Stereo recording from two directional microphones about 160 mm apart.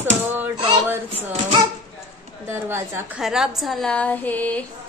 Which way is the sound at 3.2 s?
5° right (ahead or behind).